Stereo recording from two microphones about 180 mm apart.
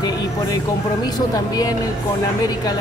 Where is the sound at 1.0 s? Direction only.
20° left (ahead or behind).